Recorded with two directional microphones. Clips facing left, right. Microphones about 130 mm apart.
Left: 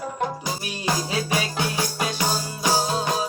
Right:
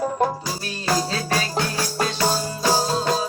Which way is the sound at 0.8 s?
15° left (ahead or behind).